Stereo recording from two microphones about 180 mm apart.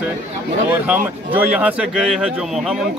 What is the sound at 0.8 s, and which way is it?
Speech, 10° right (ahead or behind).